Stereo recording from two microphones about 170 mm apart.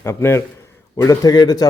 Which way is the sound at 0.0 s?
15° left (ahead or behind).